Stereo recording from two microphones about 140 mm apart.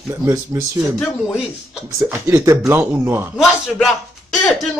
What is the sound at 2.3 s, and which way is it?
Speech, 20° right (ahead or behind).